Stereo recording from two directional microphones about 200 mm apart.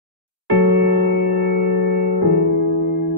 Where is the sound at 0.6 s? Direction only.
55° right (ahead or behind).